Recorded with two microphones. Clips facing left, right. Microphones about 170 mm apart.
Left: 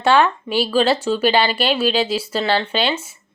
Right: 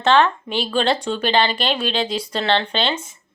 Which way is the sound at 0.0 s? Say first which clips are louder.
Left 1 dB; 10° left (ahead or behind).